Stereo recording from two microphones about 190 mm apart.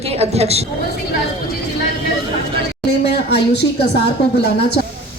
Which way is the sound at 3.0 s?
60° left (ahead or behind).